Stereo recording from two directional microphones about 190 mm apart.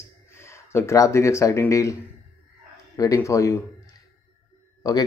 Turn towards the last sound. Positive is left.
turn(degrees=20)  # may be behind; listen again after turning